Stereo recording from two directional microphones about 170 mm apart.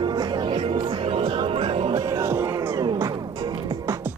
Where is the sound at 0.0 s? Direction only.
25° right (ahead or behind).